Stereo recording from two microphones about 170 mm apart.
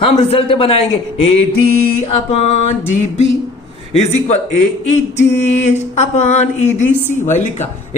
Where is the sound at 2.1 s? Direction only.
40° left (ahead or behind).